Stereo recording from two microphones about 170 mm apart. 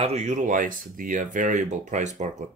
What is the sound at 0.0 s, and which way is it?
Speech, 40° right (ahead or behind).